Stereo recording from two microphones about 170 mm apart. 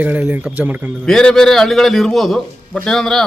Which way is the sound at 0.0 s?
10° right (ahead or behind).